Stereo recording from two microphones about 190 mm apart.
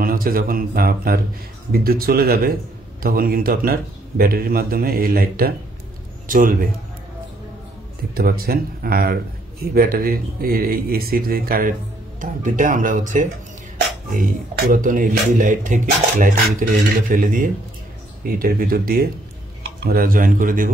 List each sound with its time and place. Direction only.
0.0 s a man's voice: 50° right (ahead or behind)
8.1 s speech: 50° right (ahead or behind)